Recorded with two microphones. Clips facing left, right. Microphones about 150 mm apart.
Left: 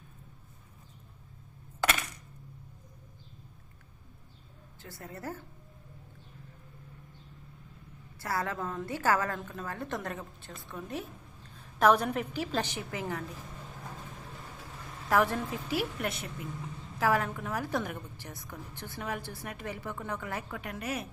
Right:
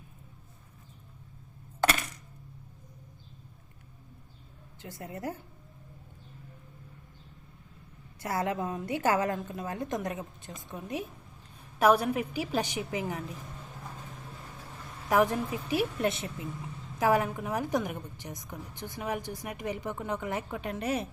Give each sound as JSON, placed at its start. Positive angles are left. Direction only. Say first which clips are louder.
{"t": 4.8, "sound": "a woman's voice", "louder": "right 4 dB", "side_deg": -20}
{"t": 8.2, "sound": "a woman's voice", "louder": "right 3 dB", "side_deg": -20}
{"t": 15.1, "sound": "a woman's voice", "louder": "right 2 dB", "side_deg": -20}